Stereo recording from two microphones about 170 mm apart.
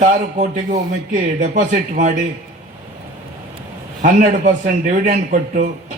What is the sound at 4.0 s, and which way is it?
A man's voice, 50° right (ahead or behind).